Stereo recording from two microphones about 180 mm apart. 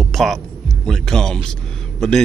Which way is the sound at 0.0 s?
Centre (ahead or behind).